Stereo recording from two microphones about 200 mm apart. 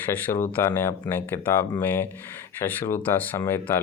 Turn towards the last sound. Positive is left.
turn(degrees=10)  # may be behind; listen again after turning